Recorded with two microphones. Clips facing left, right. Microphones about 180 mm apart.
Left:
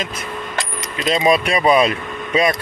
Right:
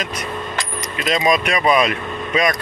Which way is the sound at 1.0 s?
30° left (ahead or behind).